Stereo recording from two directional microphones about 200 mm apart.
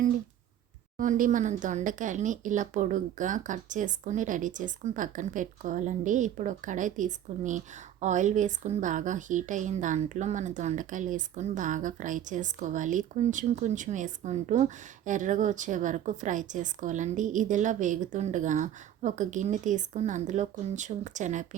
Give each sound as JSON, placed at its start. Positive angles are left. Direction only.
{"t": 0.9, "sound": "a woman's voice", "side_deg": -40}